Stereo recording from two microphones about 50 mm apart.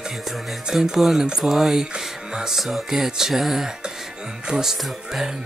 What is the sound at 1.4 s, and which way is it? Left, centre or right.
Mantra, centre.